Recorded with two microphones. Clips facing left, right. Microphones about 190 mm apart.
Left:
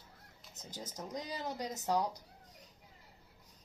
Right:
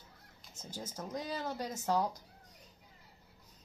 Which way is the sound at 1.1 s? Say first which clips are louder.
Right 2 dB; 20° left (ahead or behind).